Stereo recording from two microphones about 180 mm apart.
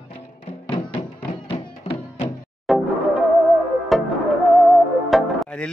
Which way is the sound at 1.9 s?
25° left (ahead or behind).